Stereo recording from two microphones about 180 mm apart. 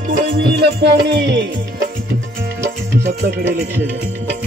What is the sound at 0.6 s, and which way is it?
Music, 70° right (ahead or behind).